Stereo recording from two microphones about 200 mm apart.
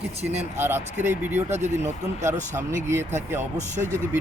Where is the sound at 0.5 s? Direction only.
10° right (ahead or behind).